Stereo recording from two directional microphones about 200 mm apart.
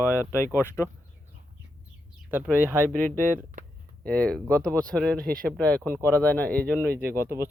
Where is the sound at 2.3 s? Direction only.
10° right (ahead or behind).